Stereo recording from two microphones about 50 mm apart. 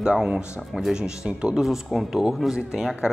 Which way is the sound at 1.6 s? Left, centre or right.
Centre.